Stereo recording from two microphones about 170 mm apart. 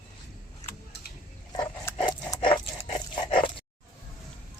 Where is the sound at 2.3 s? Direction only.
25° left (ahead or behind).